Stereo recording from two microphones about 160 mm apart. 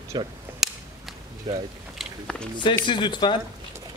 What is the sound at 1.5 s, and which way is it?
Speech, 25° right (ahead or behind).